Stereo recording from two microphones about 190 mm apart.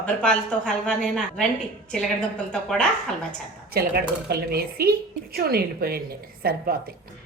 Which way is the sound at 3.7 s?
55° right (ahead or behind).